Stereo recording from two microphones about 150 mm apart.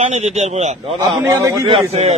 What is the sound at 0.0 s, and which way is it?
Speech, 50° right (ahead or behind).